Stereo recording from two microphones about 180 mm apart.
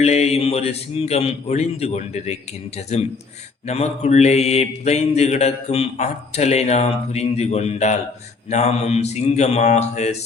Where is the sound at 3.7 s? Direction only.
35° left (ahead or behind).